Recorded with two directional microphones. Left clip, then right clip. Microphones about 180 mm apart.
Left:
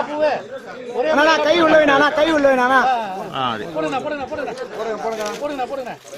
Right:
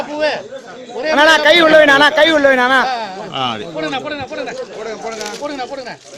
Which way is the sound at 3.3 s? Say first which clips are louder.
Right 4 dB; 40° right (ahead or behind).